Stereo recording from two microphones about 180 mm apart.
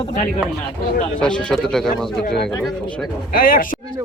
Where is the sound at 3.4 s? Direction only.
50° left (ahead or behind).